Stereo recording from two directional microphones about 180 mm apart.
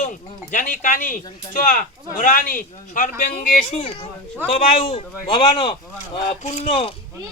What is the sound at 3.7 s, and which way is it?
Speech, 35° left (ahead or behind).